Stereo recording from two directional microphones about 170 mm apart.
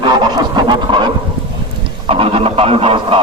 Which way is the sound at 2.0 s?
35° right (ahead or behind).